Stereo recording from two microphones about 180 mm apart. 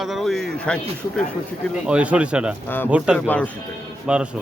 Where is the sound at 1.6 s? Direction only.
5° right (ahead or behind).